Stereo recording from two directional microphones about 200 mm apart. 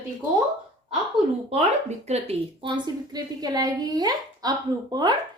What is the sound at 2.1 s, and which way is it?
A woman's voice, 30° right (ahead or behind).